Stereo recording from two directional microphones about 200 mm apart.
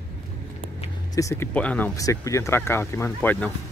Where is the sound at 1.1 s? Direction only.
15° left (ahead or behind).